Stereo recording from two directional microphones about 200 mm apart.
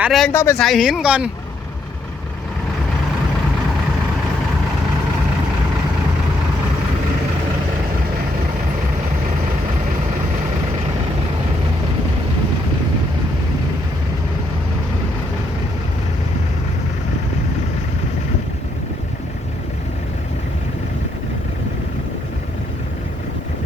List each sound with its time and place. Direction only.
0.0 s speech: centre (ahead or behind)
0.3 s speech: 10° left (ahead or behind)
0.6 s speech: centre (ahead or behind)